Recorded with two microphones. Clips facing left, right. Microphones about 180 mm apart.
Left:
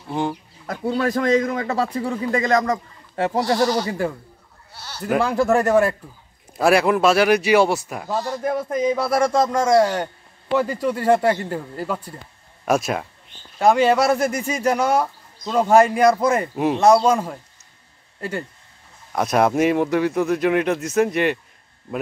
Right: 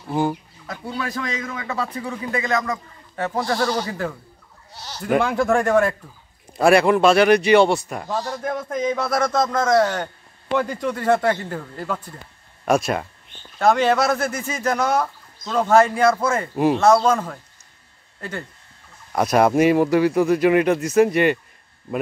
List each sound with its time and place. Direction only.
0.1 s a man's voice: 5° right (ahead or behind)
0.7 s a man's voice: 40° left (ahead or behind); by 4.2 s 10° left (ahead or behind)
4.7 s bleat: 15° right (ahead or behind)
5.0 s a man's voice: centre (ahead or behind)
16.5 s a man's voice: centre (ahead or behind)
16.8 s a man's voice: 15° left (ahead or behind)
19.1 s a man's voice: centre (ahead or behind)